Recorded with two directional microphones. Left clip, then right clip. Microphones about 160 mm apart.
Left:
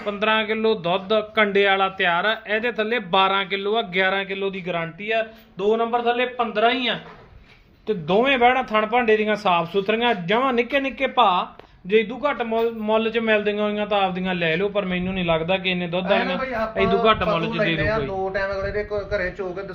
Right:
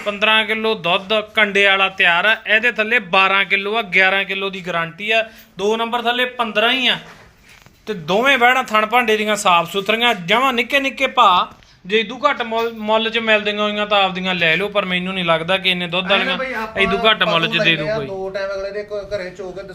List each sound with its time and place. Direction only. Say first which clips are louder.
0.0 s a man's voice: right 6 dB; 5° left (ahead or behind)
5.5 s a man's voice: right 2 dB; 25° right (ahead or behind)
7.9 s a man's voice: right 4 dB; 10° left (ahead or behind)